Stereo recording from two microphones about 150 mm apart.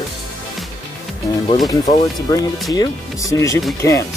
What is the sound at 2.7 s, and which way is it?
Speech, 25° left (ahead or behind).